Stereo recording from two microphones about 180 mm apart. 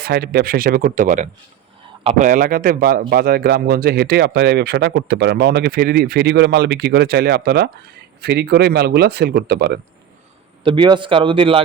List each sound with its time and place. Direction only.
0.0 s speech: 60° right (ahead or behind)
10.6 s a man's voice: 25° right (ahead or behind)